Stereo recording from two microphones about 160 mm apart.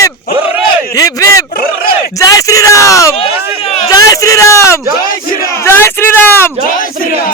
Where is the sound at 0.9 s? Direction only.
20° left (ahead or behind).